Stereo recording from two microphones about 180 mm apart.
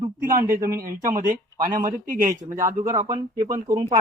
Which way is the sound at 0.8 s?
50° right (ahead or behind).